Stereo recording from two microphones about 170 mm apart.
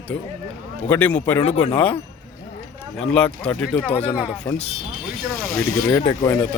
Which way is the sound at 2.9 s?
5° left (ahead or behind).